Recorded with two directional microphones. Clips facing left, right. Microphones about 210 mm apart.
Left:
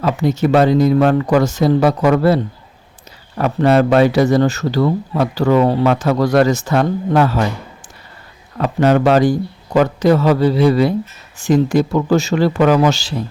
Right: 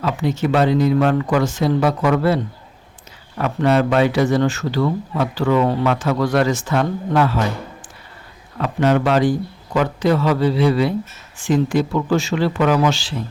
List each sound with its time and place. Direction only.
0.0 s speech: 40° left (ahead or behind)
8.5 s speech: 40° left (ahead or behind)